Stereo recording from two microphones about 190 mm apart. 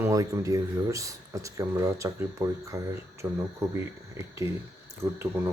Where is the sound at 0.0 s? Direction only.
15° right (ahead or behind).